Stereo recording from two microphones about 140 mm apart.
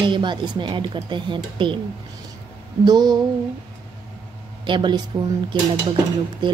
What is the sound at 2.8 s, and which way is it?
Speech, 30° right (ahead or behind).